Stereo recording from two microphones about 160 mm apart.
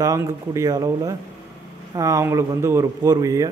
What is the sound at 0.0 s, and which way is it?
A man's voice, 20° right (ahead or behind).